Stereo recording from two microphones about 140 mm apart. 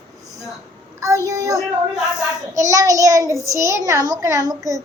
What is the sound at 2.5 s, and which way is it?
A child's voice, 25° right (ahead or behind).